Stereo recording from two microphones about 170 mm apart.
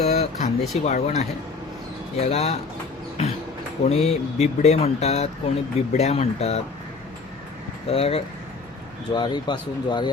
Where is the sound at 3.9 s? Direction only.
40° left (ahead or behind).